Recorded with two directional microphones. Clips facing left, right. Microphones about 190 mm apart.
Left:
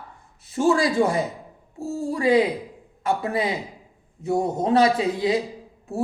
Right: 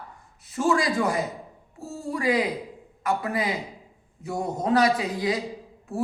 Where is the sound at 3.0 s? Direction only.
25° left (ahead or behind).